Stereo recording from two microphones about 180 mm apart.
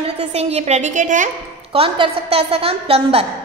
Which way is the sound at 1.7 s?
30° right (ahead or behind).